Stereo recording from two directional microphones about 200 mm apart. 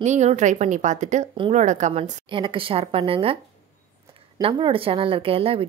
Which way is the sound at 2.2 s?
25° right (ahead or behind).